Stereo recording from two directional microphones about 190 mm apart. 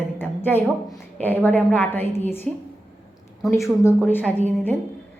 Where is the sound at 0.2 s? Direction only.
10° left (ahead or behind).